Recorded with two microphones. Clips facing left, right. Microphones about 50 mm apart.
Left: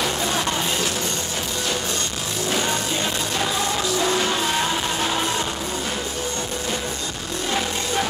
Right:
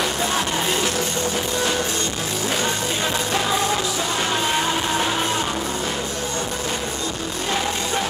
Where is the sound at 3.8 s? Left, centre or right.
Centre.